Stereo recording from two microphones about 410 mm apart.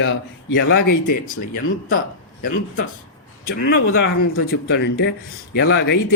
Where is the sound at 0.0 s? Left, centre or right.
Left.